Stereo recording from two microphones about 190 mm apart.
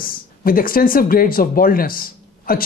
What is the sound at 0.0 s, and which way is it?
Speech, 50° left (ahead or behind).